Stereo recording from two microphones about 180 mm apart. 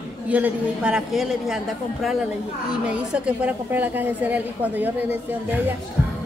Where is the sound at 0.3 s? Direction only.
5° right (ahead or behind).